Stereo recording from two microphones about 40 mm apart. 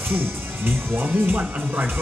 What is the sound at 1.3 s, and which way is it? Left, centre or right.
Speech, right.